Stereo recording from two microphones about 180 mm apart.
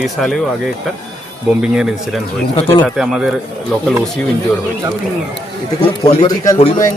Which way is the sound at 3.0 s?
5° right (ahead or behind).